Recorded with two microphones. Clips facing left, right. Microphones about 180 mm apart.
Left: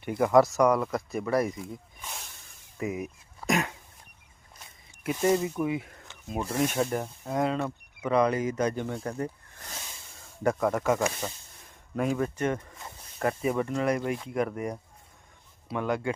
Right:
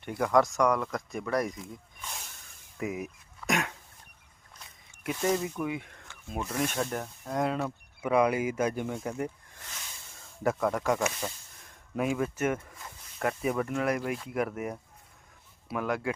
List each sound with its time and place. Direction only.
0.0 s speech: 5° left (ahead or behind)
5.0 s speech: 10° left (ahead or behind)
6.1 s rub: 20° left (ahead or behind)
6.6 s speech: 5° left (ahead or behind); by 9.3 s 10° right (ahead or behind)
10.4 s speech: centre (ahead or behind)